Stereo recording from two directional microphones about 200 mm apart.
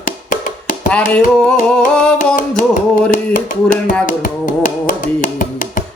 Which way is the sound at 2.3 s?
40° left (ahead or behind).